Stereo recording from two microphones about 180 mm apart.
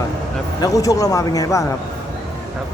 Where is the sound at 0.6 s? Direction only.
20° left (ahead or behind).